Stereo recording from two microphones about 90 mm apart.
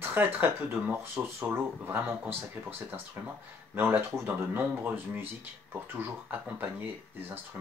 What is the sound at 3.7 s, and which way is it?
Speech, 20° right (ahead or behind).